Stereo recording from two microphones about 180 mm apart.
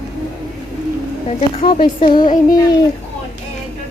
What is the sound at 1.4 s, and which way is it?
Speech, 35° left (ahead or behind).